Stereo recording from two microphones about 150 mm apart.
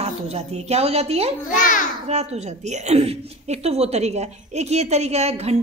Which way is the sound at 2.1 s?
45° right (ahead or behind).